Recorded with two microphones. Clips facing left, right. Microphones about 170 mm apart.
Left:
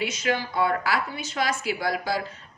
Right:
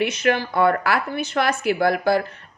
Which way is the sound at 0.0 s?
60° right (ahead or behind).